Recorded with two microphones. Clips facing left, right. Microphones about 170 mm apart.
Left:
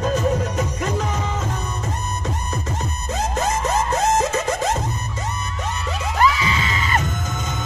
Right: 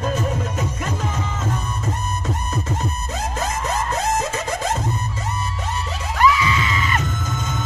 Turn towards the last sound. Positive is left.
turn(degrees=35)  # may be behind; listen again after turning